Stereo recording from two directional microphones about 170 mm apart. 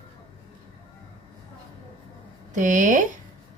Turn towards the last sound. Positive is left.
turn(degrees=-50)  # may be behind; listen again after turning